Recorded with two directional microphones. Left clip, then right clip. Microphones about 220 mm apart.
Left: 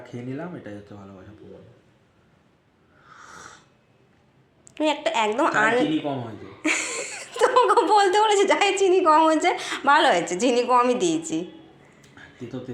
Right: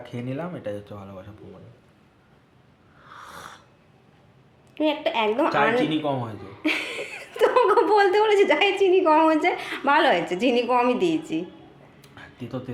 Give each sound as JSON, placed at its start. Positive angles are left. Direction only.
{"t": 0.0, "sound": "speech", "side_deg": -25}
{"t": 4.7, "sound": "a woman's voice", "side_deg": 5}